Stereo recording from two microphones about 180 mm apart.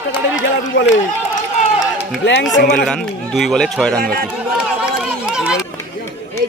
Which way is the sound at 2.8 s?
5° left (ahead or behind).